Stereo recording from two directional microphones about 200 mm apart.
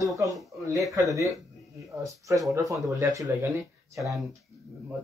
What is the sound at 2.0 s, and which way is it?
Speech, 15° right (ahead or behind).